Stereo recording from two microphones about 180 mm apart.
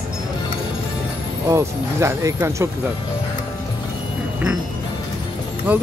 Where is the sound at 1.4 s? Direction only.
15° right (ahead or behind).